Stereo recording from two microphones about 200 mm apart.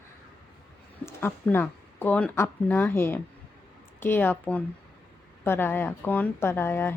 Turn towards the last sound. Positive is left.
turn(degrees=10)  # may be behind; listen again after turning